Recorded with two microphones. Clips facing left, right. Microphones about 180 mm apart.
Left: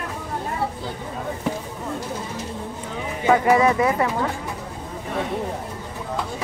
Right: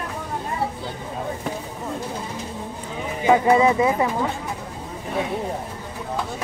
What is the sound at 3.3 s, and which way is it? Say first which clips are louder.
Speech: right 1 dB; 15° right (ahead or behind).